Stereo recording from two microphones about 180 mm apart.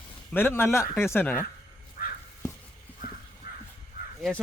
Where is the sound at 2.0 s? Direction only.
55° left (ahead or behind).